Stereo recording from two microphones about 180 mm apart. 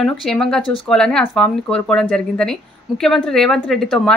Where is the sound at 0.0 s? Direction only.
Centre (ahead or behind).